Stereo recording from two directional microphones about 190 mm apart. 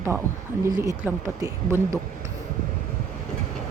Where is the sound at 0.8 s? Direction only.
15° right (ahead or behind).